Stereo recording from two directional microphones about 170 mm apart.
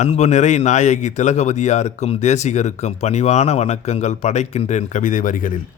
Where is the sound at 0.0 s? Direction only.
45° left (ahead or behind).